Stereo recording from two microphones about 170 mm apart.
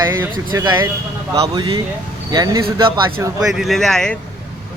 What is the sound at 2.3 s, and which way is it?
Speech, 20° right (ahead or behind).